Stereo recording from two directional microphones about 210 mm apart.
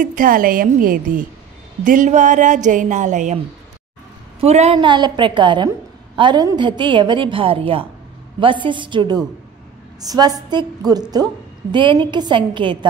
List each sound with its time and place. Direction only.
0.0 s a woman's voice: 40° right (ahead or behind)
4.4 s a woman's voice: 30° right (ahead or behind)